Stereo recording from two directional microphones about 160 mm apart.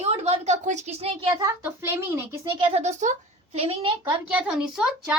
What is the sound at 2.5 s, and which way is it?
A woman's voice, 35° right (ahead or behind).